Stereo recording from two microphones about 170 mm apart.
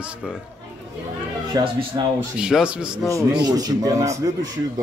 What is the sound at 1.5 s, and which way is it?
Speech, 20° right (ahead or behind).